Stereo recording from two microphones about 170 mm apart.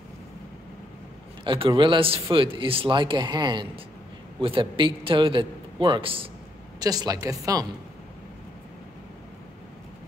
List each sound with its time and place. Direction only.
1.4 s a man's voice: 30° right (ahead or behind)